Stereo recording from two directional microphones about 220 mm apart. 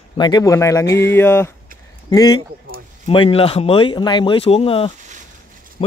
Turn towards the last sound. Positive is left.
turn(degrees=25)  # may be behind; listen again after turning